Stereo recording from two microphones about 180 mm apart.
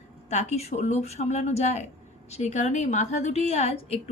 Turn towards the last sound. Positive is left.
turn(degrees=35)  # may be behind; listen again after turning